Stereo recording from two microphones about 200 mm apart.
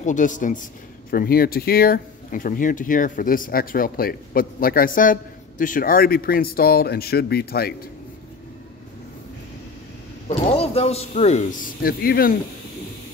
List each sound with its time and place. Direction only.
0.0 s a man's voice: 40° left (ahead or behind)
10.2 s a man's voice: 30° left (ahead or behind); by 12.4 s 50° left (ahead or behind)